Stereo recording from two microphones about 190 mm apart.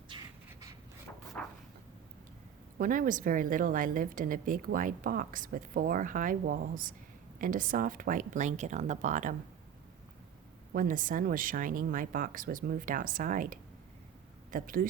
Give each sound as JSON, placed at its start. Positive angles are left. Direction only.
{"t": 2.7, "sound": "a woman's voice", "side_deg": -45}
{"t": 10.7, "sound": "a woman's voice", "side_deg": -45}